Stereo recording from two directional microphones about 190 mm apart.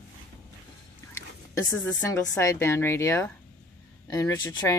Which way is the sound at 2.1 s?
20° left (ahead or behind).